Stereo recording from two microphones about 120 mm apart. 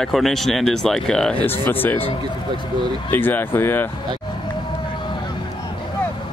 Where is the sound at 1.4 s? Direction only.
15° left (ahead or behind).